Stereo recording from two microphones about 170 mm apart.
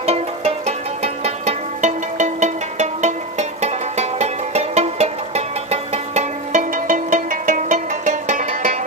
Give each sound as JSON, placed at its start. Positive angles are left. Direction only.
{"t": 0.0, "sound": "music", "side_deg": -35}